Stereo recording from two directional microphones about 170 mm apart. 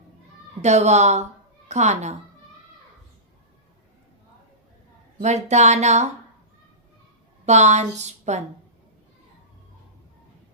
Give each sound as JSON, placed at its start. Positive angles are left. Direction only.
{"t": 0.6, "sound": "a woman's voice", "side_deg": -40}
{"t": 5.2, "sound": "a woman's voice", "side_deg": -40}
{"t": 7.4, "sound": "a woman's voice", "side_deg": -40}